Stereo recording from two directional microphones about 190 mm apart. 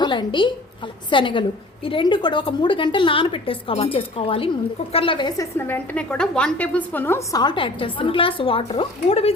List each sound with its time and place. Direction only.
0.0 s a woman's voice: 25° left (ahead or behind)
5.5 s a woman's voice: 10° left (ahead or behind); by 9.3 s 30° left (ahead or behind)